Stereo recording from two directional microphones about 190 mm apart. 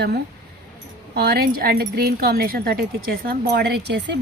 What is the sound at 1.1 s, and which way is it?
Speech, 55° right (ahead or behind).